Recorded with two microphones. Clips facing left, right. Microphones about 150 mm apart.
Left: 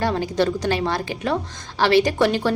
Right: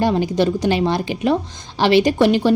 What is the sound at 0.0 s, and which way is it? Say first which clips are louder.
A woman's voice: right 4 dB; 15° right (ahead or behind).